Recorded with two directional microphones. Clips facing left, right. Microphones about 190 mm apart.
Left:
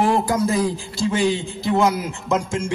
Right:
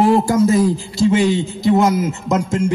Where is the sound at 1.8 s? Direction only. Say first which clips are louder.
Right 4 dB; 40° right (ahead or behind).